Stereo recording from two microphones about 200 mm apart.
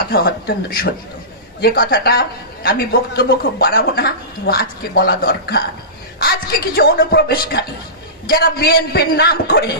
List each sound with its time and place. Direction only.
0.0 s a woman's voice: 50° left (ahead or behind)